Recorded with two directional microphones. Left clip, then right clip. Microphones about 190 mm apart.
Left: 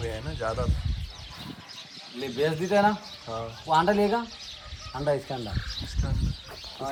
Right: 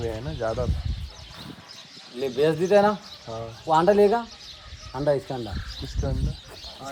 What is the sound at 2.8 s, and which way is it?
Speech, 30° right (ahead or behind).